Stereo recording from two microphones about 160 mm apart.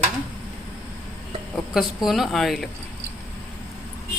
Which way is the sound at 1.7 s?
Centre (ahead or behind).